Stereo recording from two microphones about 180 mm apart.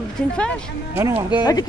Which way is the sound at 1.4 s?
20° left (ahead or behind).